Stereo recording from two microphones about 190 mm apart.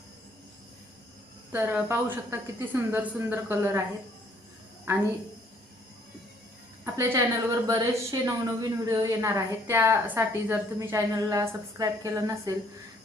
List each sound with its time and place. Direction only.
1.5 s a woman's voice: 10° right (ahead or behind)
4.9 s a woman's voice: 15° right (ahead or behind)
6.8 s a woman's voice: 15° right (ahead or behind)